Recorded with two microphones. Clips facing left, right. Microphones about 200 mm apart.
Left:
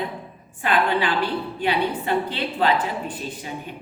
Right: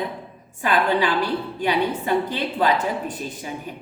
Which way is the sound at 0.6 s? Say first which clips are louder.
Right 1 dB; 40° right (ahead or behind).